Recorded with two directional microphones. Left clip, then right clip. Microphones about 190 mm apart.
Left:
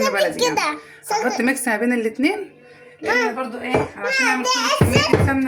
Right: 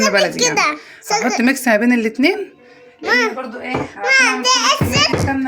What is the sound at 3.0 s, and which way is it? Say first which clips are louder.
A child's voice: right 3 dB; 55° right (ahead or behind).